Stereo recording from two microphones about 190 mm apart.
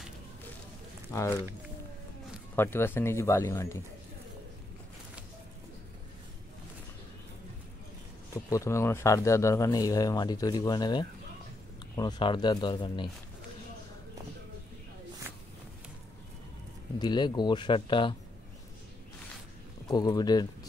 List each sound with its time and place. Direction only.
1.1 s speech: 15° left (ahead or behind)
2.5 s speech: 10° left (ahead or behind)
8.5 s speech: 15° left (ahead or behind)
17.0 s speech: 25° left (ahead or behind)
19.9 s speech: 20° left (ahead or behind)